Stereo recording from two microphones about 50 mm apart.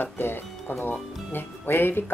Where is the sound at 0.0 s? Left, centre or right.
Left.